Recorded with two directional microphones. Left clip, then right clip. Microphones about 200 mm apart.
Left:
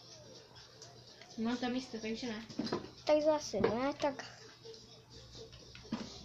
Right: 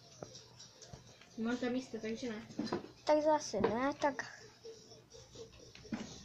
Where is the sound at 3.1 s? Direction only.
Centre (ahead or behind).